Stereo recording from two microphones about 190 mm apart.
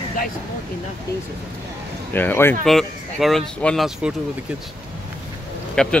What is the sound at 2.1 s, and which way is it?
Speech, 10° left (ahead or behind).